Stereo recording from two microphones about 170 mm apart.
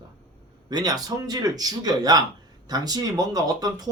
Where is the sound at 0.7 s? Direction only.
25° right (ahead or behind).